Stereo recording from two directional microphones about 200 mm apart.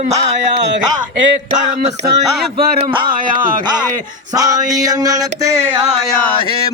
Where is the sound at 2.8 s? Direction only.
25° right (ahead or behind).